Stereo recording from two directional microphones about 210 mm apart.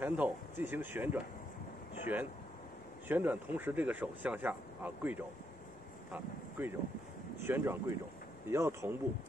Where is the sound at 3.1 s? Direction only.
10° right (ahead or behind).